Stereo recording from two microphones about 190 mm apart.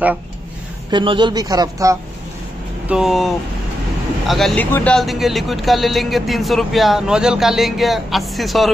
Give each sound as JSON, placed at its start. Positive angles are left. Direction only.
{"t": 0.8, "sound": "a man's voice", "side_deg": -25}
{"t": 2.9, "sound": "speech", "side_deg": 0}